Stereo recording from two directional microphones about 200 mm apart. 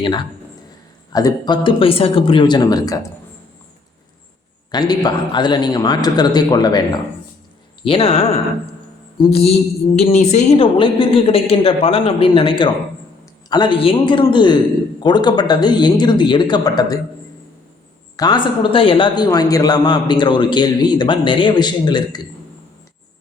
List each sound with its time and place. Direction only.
0.0 s a man's voice: 25° left (ahead or behind)
4.7 s a man's voice: 20° left (ahead or behind)
18.2 s a man's voice: 20° left (ahead or behind)